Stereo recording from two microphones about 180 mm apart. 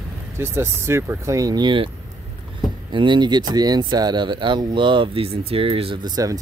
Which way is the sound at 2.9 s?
25° right (ahead or behind).